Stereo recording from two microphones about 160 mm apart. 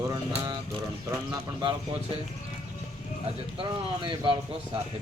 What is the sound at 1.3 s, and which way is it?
Speech, 25° right (ahead or behind).